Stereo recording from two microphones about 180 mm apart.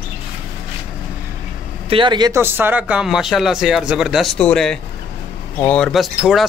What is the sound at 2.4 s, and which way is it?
Speech, 10° right (ahead or behind).